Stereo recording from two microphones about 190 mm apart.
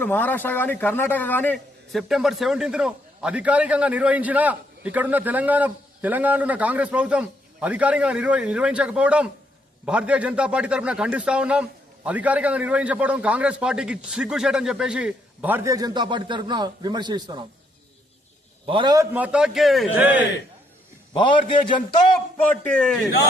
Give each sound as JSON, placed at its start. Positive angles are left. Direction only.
{"t": 0.0, "sound": "a man's voice", "side_deg": 10}
{"t": 18.6, "sound": "a man's voice", "side_deg": -25}
{"t": 19.1, "sound": "a man's voice", "side_deg": -5}
{"t": 21.1, "sound": "a man's voice", "side_deg": 25}
{"t": 22.4, "sound": "a man's voice", "side_deg": 5}